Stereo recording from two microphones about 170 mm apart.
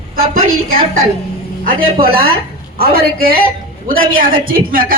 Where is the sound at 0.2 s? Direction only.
55° right (ahead or behind).